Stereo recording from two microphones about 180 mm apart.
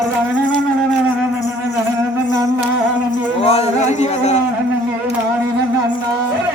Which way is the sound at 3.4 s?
35° left (ahead or behind).